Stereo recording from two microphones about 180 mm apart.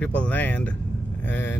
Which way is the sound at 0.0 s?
10° left (ahead or behind).